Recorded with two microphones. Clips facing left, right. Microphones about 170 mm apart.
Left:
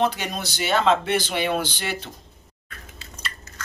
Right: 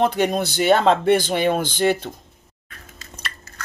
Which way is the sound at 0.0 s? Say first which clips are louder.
Right 5 dB; 55° right (ahead or behind).